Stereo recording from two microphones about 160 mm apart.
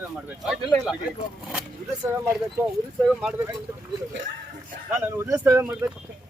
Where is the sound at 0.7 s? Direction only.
5° left (ahead or behind).